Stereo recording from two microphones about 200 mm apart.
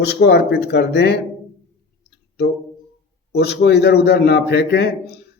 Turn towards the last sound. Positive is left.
turn(degrees=60)  # may be behind; listen again after turning